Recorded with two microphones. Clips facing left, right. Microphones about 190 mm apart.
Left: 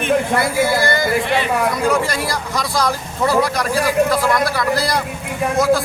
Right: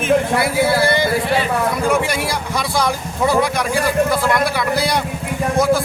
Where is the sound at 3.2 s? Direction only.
Centre (ahead or behind).